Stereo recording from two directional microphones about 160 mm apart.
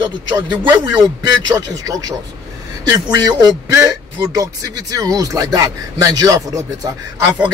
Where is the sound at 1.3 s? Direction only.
20° right (ahead or behind).